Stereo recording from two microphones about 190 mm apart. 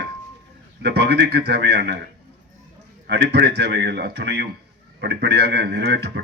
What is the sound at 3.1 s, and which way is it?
A man's voice, 65° right (ahead or behind).